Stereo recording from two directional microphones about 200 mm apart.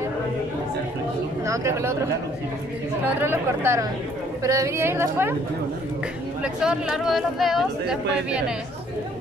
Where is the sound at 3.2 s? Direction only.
10° right (ahead or behind).